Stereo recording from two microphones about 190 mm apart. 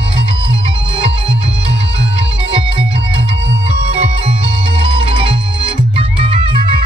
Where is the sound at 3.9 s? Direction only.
30° right (ahead or behind).